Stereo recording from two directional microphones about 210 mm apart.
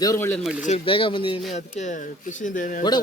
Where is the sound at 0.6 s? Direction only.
25° left (ahead or behind).